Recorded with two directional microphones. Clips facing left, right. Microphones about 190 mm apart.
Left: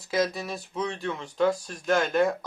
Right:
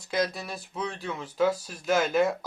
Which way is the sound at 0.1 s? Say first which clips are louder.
Left 2 dB; centre (ahead or behind).